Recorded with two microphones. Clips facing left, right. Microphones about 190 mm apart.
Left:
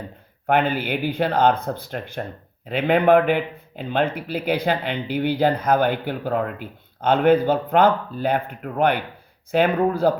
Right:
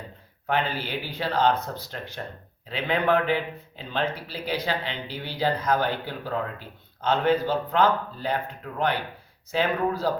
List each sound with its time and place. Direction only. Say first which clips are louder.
0.4 s speech: left 7 dB; 55° left (ahead or behind)